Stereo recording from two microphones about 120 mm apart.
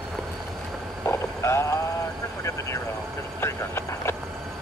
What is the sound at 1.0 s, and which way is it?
Vehicle, 20° left (ahead or behind).